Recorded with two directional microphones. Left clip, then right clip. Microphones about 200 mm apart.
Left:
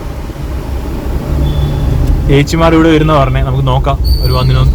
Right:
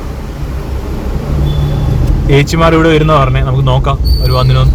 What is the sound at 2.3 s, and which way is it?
Speech, centre (ahead or behind).